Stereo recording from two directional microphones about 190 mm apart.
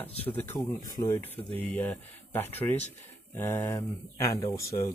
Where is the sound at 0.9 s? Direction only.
20° left (ahead or behind).